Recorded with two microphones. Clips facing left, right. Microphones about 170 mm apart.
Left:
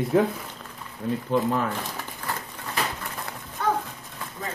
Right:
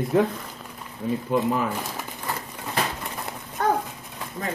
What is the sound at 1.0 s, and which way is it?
Speech, 10° right (ahead or behind).